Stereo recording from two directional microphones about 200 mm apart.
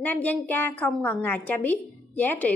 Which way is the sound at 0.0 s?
10° left (ahead or behind).